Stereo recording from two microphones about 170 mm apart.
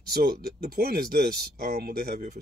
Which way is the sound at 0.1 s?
65° right (ahead or behind).